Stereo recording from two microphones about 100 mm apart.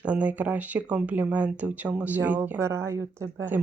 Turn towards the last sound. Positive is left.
turn(degrees=-20)  # may be behind; listen again after turning